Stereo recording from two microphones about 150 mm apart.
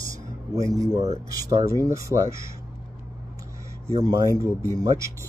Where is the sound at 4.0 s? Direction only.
25° right (ahead or behind).